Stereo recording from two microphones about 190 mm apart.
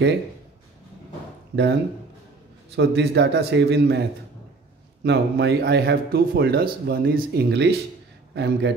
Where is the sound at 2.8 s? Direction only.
65° right (ahead or behind).